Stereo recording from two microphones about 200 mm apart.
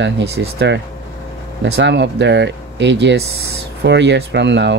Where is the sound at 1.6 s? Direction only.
65° right (ahead or behind).